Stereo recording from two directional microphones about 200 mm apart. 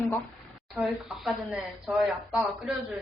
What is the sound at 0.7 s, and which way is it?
Speech, 5° right (ahead or behind).